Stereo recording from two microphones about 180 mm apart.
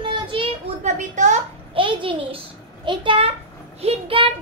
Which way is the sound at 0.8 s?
40° right (ahead or behind).